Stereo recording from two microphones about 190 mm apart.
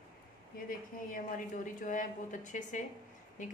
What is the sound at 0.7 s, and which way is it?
A woman's voice, 45° left (ahead or behind).